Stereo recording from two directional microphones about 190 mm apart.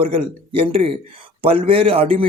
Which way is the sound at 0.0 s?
30° right (ahead or behind).